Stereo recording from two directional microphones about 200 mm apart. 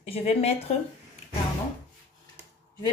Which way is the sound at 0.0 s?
30° left (ahead or behind).